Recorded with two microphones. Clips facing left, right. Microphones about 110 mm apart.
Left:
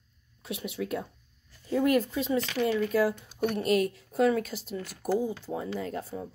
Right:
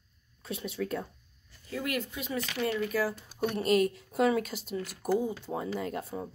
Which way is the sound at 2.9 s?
20° left (ahead or behind).